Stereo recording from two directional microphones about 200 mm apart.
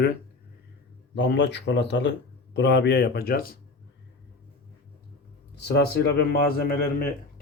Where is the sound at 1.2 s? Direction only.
60° left (ahead or behind).